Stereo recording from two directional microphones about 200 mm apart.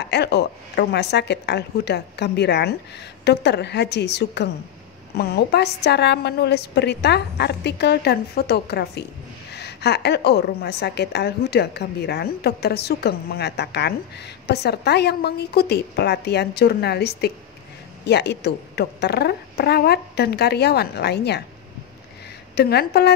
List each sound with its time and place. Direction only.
0.0 s a woman's voice: 55° left (ahead or behind)
22.6 s a woman's voice: 55° left (ahead or behind)